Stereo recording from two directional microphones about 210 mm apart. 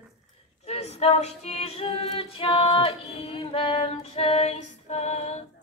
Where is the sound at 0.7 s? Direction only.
30° left (ahead or behind).